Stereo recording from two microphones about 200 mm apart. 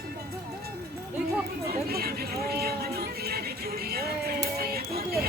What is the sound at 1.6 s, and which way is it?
Chatter, 50° right (ahead or behind).